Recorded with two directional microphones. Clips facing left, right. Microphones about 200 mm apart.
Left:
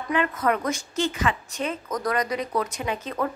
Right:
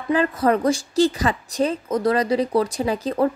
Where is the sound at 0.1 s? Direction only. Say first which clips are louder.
Right 5 dB; 35° right (ahead or behind).